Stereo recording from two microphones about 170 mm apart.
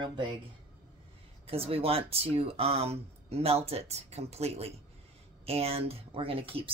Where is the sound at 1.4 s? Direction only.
35° right (ahead or behind).